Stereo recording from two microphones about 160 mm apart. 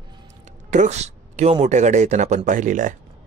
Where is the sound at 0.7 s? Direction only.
50° right (ahead or behind).